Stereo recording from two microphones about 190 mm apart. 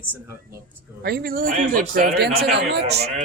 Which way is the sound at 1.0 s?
50° right (ahead or behind).